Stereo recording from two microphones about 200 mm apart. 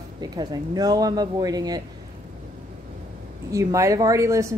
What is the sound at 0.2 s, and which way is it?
Speech, 20° right (ahead or behind).